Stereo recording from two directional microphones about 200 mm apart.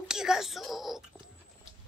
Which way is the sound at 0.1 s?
5° right (ahead or behind).